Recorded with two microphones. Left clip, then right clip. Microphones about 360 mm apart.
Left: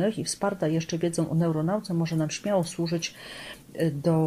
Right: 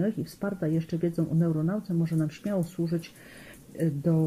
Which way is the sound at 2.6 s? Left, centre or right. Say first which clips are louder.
Left 4 dB; left.